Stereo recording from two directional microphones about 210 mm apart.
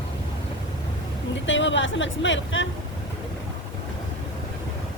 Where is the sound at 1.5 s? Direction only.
60° left (ahead or behind).